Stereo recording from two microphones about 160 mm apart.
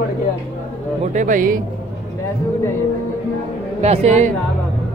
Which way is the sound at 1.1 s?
55° right (ahead or behind).